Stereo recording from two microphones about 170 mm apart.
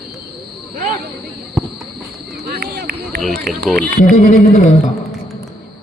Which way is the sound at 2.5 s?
65° right (ahead or behind).